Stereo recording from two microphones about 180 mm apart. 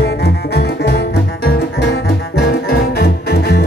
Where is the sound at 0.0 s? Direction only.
65° left (ahead or behind).